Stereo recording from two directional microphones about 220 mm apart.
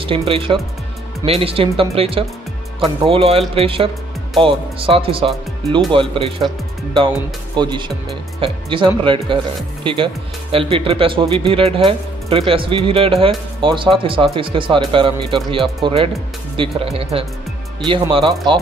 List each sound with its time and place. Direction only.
0.3 s speech: 25° right (ahead or behind)
7.5 s speech: 20° right (ahead or behind)